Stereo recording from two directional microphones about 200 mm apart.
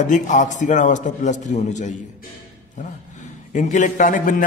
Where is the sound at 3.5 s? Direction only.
40° left (ahead or behind).